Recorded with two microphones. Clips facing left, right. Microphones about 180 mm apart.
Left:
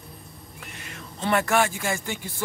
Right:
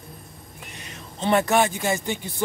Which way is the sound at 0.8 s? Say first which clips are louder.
Right 2 dB; 20° right (ahead or behind).